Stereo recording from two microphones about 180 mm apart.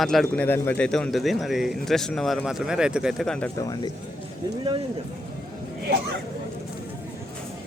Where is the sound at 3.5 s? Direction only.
20° left (ahead or behind).